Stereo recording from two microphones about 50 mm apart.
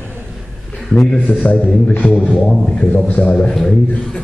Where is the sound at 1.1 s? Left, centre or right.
Left.